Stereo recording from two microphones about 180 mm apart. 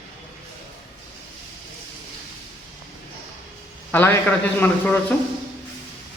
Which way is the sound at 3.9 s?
10° left (ahead or behind).